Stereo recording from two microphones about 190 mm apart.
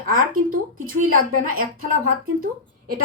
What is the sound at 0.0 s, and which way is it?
A woman's voice, 50° right (ahead or behind).